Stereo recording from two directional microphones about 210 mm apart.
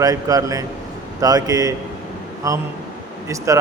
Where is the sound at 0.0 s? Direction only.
15° right (ahead or behind).